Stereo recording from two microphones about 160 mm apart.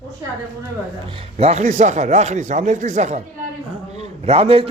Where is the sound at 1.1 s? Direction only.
35° right (ahead or behind).